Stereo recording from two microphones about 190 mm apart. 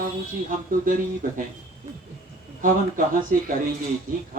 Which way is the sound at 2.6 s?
45° right (ahead or behind).